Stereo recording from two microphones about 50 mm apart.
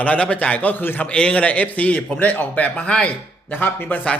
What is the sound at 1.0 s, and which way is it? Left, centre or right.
A man's voice, left.